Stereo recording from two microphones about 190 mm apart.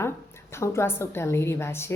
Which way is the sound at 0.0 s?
15° left (ahead or behind).